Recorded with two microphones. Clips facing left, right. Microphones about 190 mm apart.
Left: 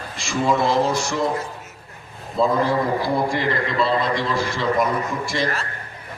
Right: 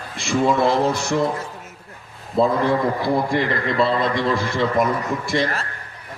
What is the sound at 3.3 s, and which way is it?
A man's voice, 55° right (ahead or behind).